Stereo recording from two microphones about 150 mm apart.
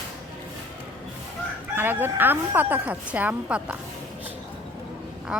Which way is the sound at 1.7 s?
15° right (ahead or behind).